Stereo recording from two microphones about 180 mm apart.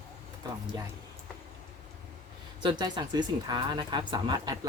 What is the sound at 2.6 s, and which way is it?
Speech, 25° right (ahead or behind).